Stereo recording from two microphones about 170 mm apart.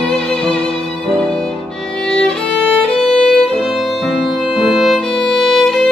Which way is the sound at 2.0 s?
5° left (ahead or behind).